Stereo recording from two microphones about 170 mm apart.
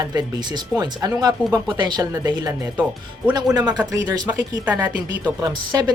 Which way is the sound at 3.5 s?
25° right (ahead or behind).